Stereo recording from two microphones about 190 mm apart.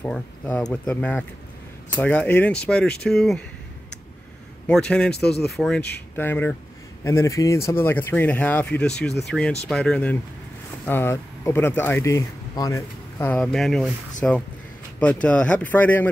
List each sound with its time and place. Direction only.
0.0 s speech: 5° left (ahead or behind)
4.6 s speech: 5° left (ahead or behind)